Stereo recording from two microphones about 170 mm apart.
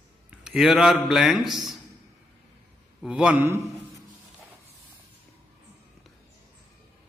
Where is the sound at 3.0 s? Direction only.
5° right (ahead or behind).